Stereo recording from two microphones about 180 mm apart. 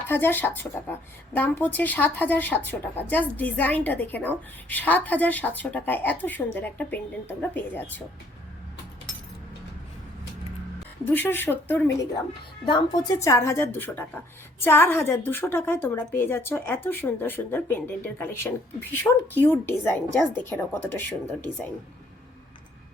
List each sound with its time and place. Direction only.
0.1 s a woman's voice: 10° left (ahead or behind)
11.1 s a woman's voice: 10° left (ahead or behind)
12.6 s a woman's voice: 25° left (ahead or behind)